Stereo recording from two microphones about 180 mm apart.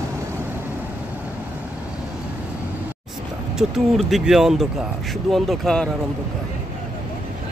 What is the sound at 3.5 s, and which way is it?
Speech, centre (ahead or behind).